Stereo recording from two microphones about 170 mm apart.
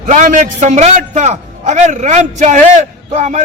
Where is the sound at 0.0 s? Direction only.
45° right (ahead or behind).